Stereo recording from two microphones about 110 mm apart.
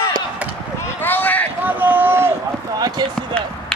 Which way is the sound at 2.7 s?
35° right (ahead or behind).